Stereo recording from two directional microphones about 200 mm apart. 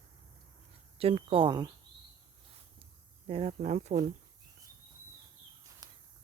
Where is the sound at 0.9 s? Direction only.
30° right (ahead or behind).